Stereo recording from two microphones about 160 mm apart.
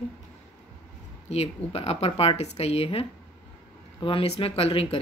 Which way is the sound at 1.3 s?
40° left (ahead or behind).